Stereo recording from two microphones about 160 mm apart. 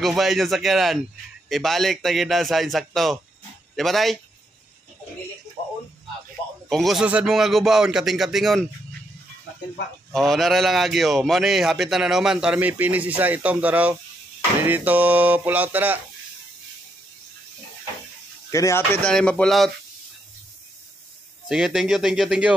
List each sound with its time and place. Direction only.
0.0 s a man's voice: centre (ahead or behind)
6.7 s a man's voice: centre (ahead or behind)
10.1 s a man's voice: centre (ahead or behind)
14.6 s a sound: 10° right (ahead or behind)
18.5 s speech: 15° left (ahead or behind)
19.0 s a man's voice: 5° left (ahead or behind)
21.5 s a man's voice: 5° right (ahead or behind)